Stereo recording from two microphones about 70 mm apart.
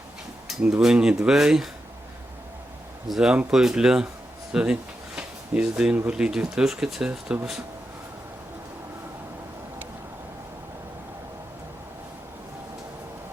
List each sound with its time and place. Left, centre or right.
0.4 s speech: centre
3.1 s speech: centre